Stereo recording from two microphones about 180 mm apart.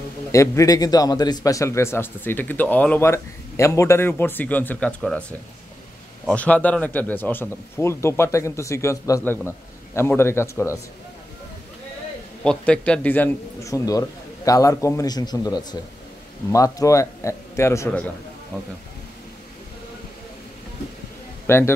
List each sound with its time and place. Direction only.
0.3 s a man's voice: 15° left (ahead or behind)
6.2 s a man's voice: 10° left (ahead or behind)
12.4 s a man's voice: 5° left (ahead or behind)
21.5 s a man's voice: 15° left (ahead or behind)